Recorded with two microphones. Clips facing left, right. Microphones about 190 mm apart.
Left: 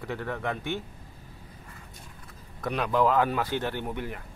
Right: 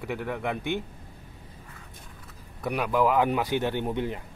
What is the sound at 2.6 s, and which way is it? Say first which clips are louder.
Speech: even; 10° right (ahead or behind).